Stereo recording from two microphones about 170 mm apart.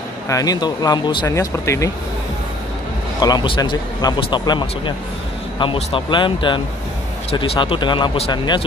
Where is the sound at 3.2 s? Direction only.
25° left (ahead or behind).